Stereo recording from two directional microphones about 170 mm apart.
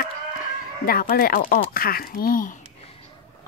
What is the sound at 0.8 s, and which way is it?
Speech, 60° left (ahead or behind).